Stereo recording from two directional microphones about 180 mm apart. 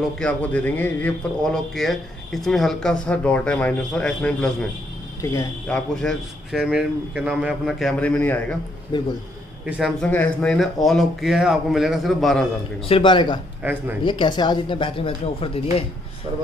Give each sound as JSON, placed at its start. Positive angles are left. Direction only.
{"t": 0.2, "sound": "speech", "side_deg": 10}
{"t": 5.2, "sound": "speech", "side_deg": 15}
{"t": 5.9, "sound": "speech", "side_deg": 0}
{"t": 8.9, "sound": "speech", "side_deg": 25}
{"t": 9.7, "sound": "speech", "side_deg": 0}
{"t": 12.8, "sound": "speech", "side_deg": 30}
{"t": 13.6, "sound": "speech", "side_deg": -10}
{"t": 14.0, "sound": "speech", "side_deg": 25}